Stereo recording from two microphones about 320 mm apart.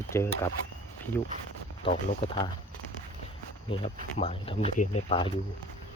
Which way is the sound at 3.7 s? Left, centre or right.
Centre.